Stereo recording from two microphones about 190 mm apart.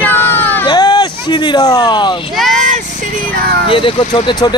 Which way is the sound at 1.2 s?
25° left (ahead or behind).